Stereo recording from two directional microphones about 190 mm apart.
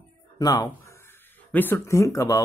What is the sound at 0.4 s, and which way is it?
Speech, 20° left (ahead or behind).